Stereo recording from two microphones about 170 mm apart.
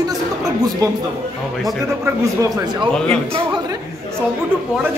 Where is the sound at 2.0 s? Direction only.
20° right (ahead or behind).